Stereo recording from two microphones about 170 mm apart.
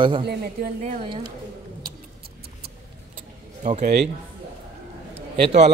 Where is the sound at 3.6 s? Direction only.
45° right (ahead or behind).